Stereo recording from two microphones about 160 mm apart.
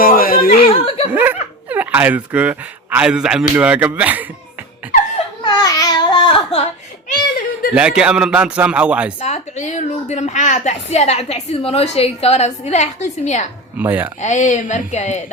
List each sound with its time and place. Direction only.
0.0 s a sound: 65° left (ahead or behind)
0.7 s snicker: 35° left (ahead or behind)
1.1 s speech: 10° right (ahead or behind)
5.4 s babbling: 25° left (ahead or behind)
7.7 s speech: 5° right (ahead or behind)
9.2 s a woman's voice: 45° left (ahead or behind)
13.7 s speech: 10° right (ahead or behind)
14.2 s a woman's voice: 50° left (ahead or behind)